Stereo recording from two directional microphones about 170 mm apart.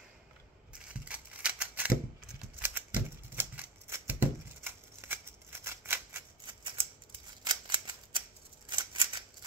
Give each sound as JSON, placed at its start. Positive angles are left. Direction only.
{"t": 1.0, "sound": "a sound", "side_deg": -5}
{"t": 2.6, "sound": "typewriter", "side_deg": -10}
{"t": 6.4, "sound": "typewriter", "side_deg": -30}
{"t": 8.6, "sound": "scissors", "side_deg": -25}